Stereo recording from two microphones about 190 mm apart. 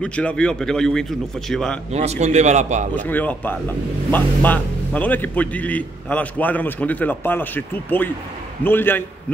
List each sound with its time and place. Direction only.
0.0 s speech: 5° left (ahead or behind)
1.9 s speech: 35° right (ahead or behind)
3.1 s a man's voice: 10° left (ahead or behind)